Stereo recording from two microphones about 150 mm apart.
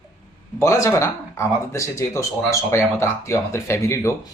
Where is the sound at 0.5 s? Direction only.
20° left (ahead or behind).